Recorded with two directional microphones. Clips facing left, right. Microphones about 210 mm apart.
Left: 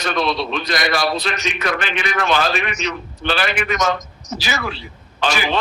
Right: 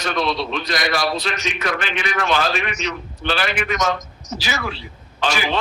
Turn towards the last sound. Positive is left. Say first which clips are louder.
# left 1 dB
turn(degrees=65)  # may be behind; listen again after turning